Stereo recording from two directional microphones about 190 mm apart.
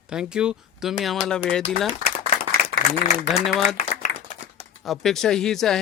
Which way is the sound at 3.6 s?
40° left (ahead or behind).